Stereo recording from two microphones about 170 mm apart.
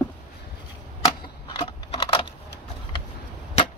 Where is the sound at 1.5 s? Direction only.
25° left (ahead or behind).